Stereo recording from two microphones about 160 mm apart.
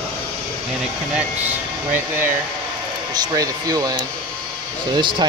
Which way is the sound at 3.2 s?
20° right (ahead or behind).